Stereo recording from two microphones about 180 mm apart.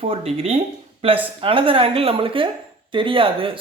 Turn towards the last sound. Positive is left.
turn(degrees=-30)  # may be behind; listen again after turning